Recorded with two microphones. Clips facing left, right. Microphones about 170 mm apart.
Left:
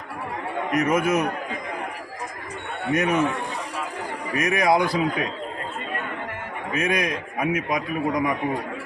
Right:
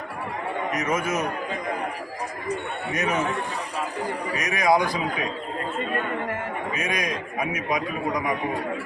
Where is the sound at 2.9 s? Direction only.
55° left (ahead or behind).